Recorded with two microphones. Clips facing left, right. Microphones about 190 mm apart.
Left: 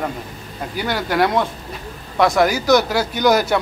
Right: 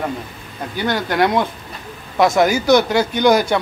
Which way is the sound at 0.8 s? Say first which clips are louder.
Right 1 dB; 5° left (ahead or behind).